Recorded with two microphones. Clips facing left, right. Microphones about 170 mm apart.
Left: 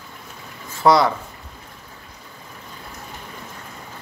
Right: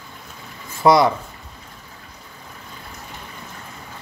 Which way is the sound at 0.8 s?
15° right (ahead or behind).